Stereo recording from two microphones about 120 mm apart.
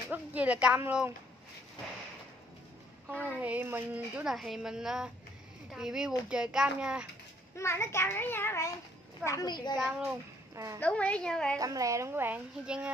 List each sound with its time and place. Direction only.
0.1 s speech: 10° right (ahead or behind)
3.1 s speech: 15° right (ahead or behind)
4.2 s a child's voice: centre (ahead or behind)
7.5 s a child's voice: 25° left (ahead or behind)
9.8 s speech: 15° right (ahead or behind)
10.5 s a woman's voice: 25° right (ahead or behind)
10.8 s a woman's voice: 10° left (ahead or behind)
11.6 s a woman's voice: 30° right (ahead or behind)
12.6 s speech: 5° right (ahead or behind)